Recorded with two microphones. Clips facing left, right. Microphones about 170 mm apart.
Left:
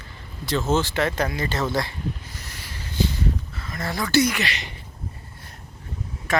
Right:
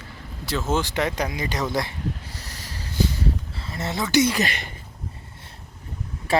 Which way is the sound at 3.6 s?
25° right (ahead or behind).